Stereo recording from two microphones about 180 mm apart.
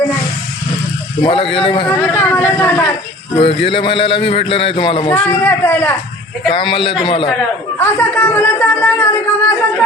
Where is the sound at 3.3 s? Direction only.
30° left (ahead or behind).